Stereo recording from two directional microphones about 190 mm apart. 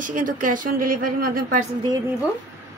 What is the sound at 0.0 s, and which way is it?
Speech, 45° right (ahead or behind).